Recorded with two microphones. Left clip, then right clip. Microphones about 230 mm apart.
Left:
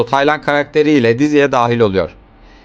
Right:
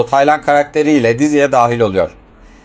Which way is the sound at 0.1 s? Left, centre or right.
Left.